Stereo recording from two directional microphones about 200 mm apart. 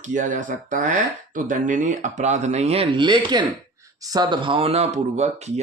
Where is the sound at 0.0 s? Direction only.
40° right (ahead or behind).